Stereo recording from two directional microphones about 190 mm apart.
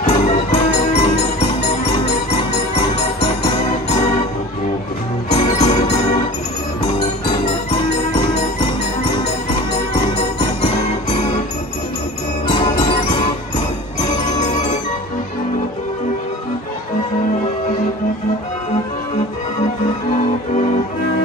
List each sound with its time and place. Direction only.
0.0 s music: 35° left (ahead or behind)
5.3 s music: 35° left (ahead or behind)
7.7 s music: 35° left (ahead or behind)
12.4 s music: 30° left (ahead or behind)